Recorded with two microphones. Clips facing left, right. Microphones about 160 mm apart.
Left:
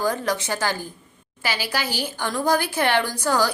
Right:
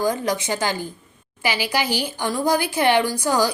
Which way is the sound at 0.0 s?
15° right (ahead or behind).